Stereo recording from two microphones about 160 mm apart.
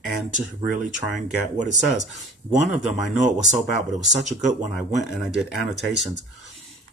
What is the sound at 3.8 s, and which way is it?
Speech, 45° right (ahead or behind).